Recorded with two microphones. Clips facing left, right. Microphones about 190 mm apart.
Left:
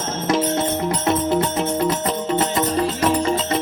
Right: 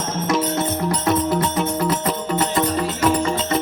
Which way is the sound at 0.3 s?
25° left (ahead or behind).